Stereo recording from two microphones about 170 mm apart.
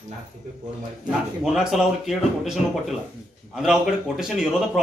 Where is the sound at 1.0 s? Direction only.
5° right (ahead or behind).